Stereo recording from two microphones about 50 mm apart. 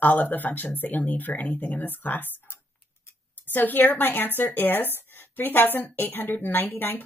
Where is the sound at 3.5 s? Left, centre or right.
Left.